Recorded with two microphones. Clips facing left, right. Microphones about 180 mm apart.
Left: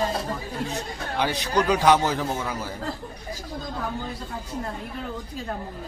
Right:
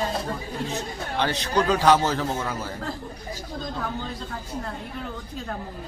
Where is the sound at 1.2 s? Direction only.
15° left (ahead or behind).